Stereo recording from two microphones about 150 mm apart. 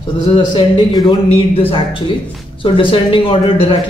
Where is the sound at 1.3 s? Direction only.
40° left (ahead or behind).